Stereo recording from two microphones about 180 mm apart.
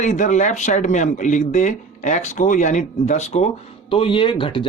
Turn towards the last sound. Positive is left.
turn(degrees=30)  # may be behind; listen again after turning